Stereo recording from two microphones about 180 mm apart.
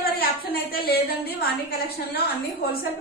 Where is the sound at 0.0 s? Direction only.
55° left (ahead or behind).